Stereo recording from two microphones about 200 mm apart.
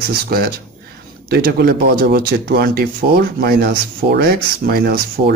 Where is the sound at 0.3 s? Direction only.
50° right (ahead or behind).